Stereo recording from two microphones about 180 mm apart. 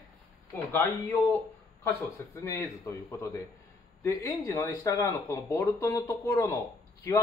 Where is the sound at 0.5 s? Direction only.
10° left (ahead or behind).